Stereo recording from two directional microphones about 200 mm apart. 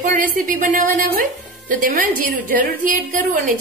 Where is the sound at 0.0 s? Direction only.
40° right (ahead or behind).